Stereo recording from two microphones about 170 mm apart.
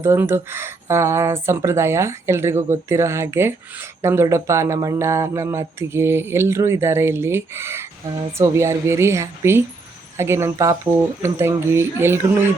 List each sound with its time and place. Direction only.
0.0 s speech: 15° right (ahead or behind)